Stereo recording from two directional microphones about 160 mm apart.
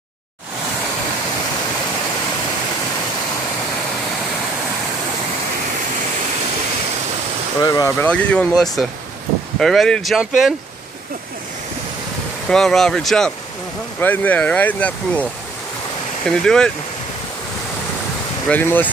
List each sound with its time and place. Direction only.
7.6 s speech: 25° left (ahead or behind)
8.0 s speech: 5° left (ahead or behind)
12.4 s speech: 5° left (ahead or behind)
16.3 s speech: 5° left (ahead or behind)
18.5 s speech: 10° left (ahead or behind)